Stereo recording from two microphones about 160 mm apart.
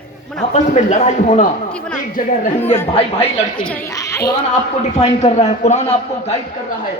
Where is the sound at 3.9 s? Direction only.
20° left (ahead or behind).